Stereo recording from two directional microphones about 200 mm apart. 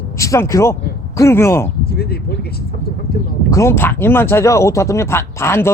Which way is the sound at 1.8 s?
50° left (ahead or behind).